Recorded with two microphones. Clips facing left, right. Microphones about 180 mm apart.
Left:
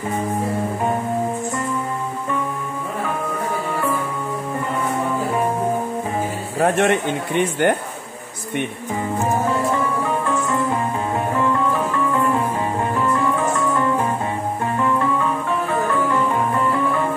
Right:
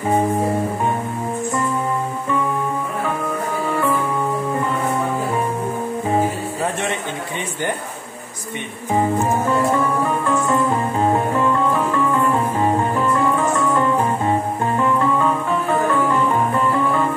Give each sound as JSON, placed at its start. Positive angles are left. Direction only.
{"t": 6.6, "sound": "speech", "side_deg": 60}